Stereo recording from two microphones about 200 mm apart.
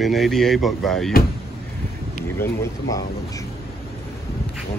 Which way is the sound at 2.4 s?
15° left (ahead or behind).